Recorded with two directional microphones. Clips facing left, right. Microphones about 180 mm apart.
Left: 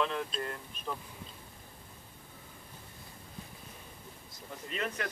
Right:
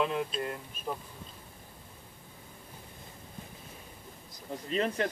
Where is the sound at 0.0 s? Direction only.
10° right (ahead or behind).